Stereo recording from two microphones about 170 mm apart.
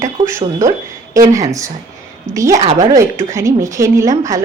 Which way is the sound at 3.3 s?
20° right (ahead or behind).